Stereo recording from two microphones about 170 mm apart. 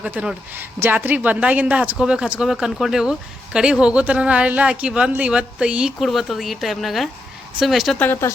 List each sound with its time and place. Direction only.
0.0 s a woman's voice: 5° right (ahead or behind)
7.9 s speech: 10° left (ahead or behind)